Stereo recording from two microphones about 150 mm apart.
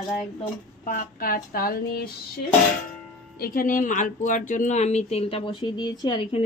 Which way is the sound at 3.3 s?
80° left.